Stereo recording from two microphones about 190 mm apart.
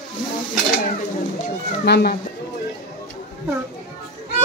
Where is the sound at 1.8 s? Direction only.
60° left (ahead or behind).